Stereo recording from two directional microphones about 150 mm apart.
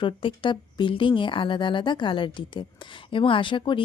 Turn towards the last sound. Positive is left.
turn(degrees=35)  # may be behind; listen again after turning